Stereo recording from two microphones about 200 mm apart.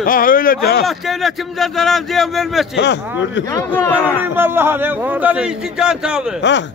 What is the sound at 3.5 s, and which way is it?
Speech, 10° left (ahead or behind).